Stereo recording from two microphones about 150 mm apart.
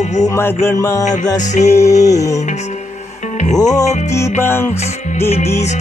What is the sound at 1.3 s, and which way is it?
Music, 50° left (ahead or behind).